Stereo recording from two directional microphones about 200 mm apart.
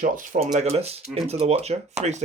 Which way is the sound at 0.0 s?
45° right (ahead or behind).